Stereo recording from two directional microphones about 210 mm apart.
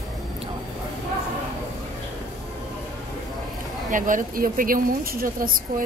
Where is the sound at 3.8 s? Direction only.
40° right (ahead or behind).